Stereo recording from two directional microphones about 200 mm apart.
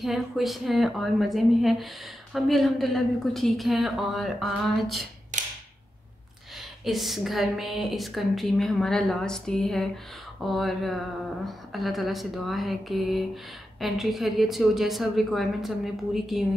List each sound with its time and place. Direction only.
0.0 s a woman's voice: centre (ahead or behind)
6.8 s a woman's voice: centre (ahead or behind)